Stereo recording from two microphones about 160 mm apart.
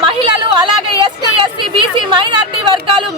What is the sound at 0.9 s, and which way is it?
Speech, 30° right (ahead or behind).